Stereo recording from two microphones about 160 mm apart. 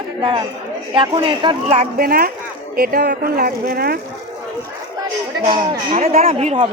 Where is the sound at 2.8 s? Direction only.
80° right.